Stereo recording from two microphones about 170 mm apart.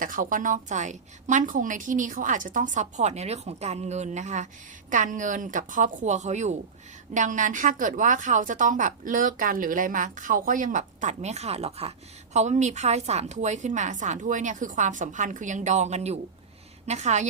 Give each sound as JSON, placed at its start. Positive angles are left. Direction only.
{"t": 0.0, "sound": "a woman's voice", "side_deg": -50}